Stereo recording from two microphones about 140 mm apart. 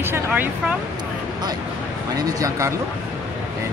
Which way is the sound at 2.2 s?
25° right (ahead or behind).